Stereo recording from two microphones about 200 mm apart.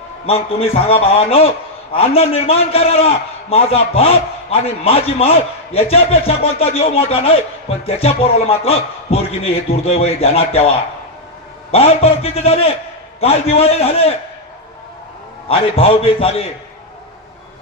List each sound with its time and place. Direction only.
0.3 s a man's voice: 30° left (ahead or behind)
15.4 s a man's voice: 30° left (ahead or behind)